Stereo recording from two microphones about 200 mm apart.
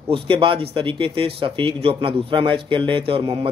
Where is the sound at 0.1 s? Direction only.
25° right (ahead or behind).